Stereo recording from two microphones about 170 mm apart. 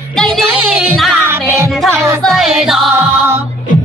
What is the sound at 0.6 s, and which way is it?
Music, 5° right (ahead or behind).